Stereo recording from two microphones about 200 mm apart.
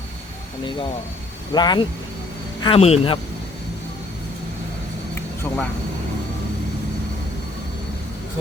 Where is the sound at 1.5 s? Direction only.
20° left (ahead or behind).